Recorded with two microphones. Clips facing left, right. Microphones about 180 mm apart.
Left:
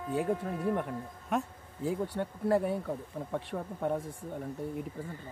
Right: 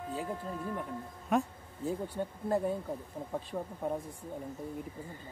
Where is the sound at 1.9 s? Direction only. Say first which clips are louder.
Left 2 dB; 80° left.